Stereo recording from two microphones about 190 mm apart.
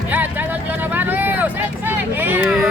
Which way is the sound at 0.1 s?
10° right (ahead or behind).